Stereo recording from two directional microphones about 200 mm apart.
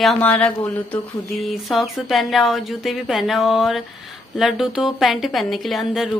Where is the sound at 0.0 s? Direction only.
5° left (ahead or behind).